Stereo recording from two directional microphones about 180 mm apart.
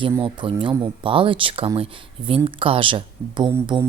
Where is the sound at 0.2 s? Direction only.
30° right (ahead or behind).